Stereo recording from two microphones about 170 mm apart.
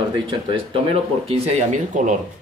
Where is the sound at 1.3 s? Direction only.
45° right (ahead or behind).